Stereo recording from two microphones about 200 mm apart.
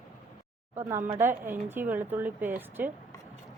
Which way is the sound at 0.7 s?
10° right (ahead or behind).